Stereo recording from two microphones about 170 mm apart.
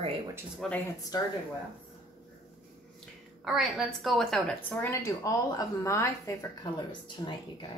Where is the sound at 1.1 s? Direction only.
25° left (ahead or behind).